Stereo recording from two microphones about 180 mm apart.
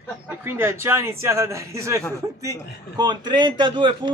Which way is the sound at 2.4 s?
20° right (ahead or behind).